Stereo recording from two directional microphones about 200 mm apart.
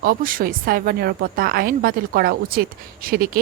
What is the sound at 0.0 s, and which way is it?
A woman's voice, 45° right (ahead or behind).